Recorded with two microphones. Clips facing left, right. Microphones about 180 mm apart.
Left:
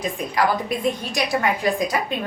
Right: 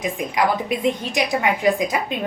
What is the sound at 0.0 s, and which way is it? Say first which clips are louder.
A woman's voice: right 1 dB; 20° right (ahead or behind).